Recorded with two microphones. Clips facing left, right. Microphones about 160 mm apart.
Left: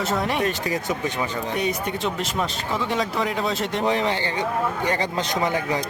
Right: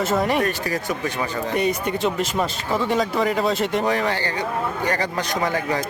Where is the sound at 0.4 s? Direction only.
20° left (ahead or behind).